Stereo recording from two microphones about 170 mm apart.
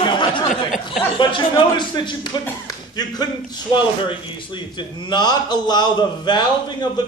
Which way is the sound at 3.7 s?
25° left (ahead or behind).